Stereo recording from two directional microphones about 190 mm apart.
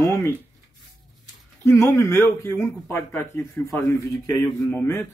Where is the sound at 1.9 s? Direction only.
15° left (ahead or behind).